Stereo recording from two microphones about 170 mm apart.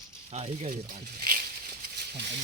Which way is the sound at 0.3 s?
40° right (ahead or behind).